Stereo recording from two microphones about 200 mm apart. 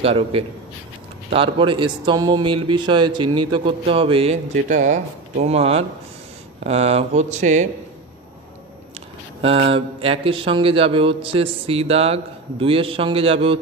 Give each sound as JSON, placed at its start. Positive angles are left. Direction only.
{"t": 0.0, "sound": "speech", "side_deg": -30}
{"t": 9.7, "sound": "speech", "side_deg": -25}